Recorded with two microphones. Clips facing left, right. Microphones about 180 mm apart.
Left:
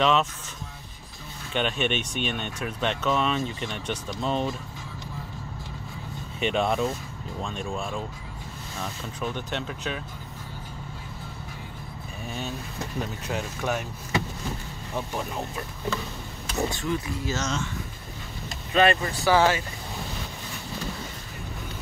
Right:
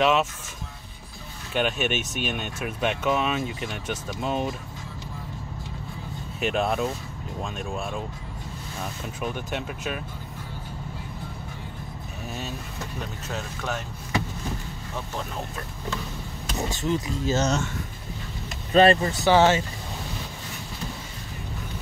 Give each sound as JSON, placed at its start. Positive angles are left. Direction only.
{"t": 0.0, "sound": "speech", "side_deg": -5}
{"t": 1.5, "sound": "speech", "side_deg": -5}
{"t": 6.4, "sound": "speech", "side_deg": -5}
{"t": 9.2, "sound": "speech", "side_deg": -10}
{"t": 13.3, "sound": "speech", "side_deg": 10}
{"t": 16.7, "sound": "speech", "side_deg": -20}
{"t": 18.7, "sound": "speech", "side_deg": -35}
{"t": 19.0, "sound": "speech", "side_deg": -20}